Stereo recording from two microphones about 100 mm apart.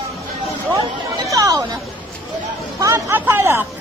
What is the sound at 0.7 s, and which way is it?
Chatter, 35° right (ahead or behind).